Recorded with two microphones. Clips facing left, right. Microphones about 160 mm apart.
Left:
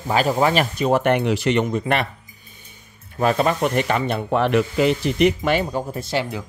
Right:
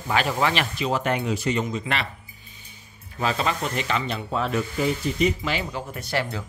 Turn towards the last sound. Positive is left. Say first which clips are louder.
# left 3 dB
turn(degrees=20)  # may be behind; listen again after turning